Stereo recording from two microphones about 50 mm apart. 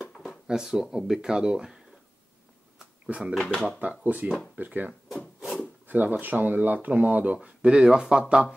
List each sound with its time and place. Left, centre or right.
0.5 s speech: centre
3.3 s speech: centre
3.8 s speech: right
7.3 s speech: right